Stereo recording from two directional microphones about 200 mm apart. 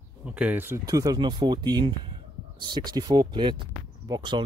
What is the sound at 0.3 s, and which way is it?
Speech, 5° right (ahead or behind).